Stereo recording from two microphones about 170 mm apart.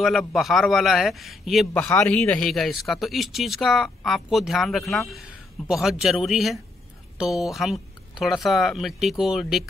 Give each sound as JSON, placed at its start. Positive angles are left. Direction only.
{"t": 0.0, "sound": "speech", "side_deg": 0}